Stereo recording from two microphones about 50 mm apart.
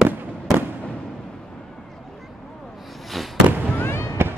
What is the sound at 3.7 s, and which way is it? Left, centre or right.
Fireworks, left.